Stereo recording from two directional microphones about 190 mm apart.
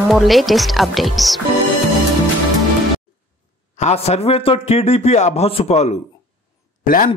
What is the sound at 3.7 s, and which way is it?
A man's voice, 35° left (ahead or behind).